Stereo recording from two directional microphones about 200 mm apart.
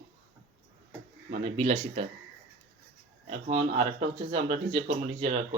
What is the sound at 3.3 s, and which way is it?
Speech, 30° right (ahead or behind).